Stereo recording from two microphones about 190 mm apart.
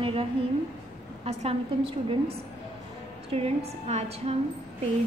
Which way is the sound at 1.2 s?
30° right (ahead or behind).